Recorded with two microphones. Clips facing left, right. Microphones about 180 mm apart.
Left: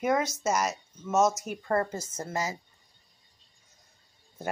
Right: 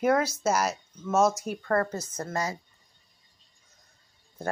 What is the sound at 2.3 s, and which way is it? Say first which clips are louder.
Speech: right 1 dB; 5° left (ahead or behind).